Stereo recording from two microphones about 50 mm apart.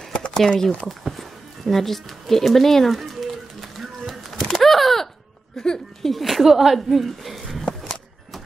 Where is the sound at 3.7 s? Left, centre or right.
Centre.